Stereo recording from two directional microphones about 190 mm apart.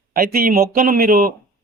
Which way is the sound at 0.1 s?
50° right (ahead or behind).